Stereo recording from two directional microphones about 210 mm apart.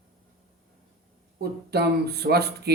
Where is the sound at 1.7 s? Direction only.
50° right (ahead or behind).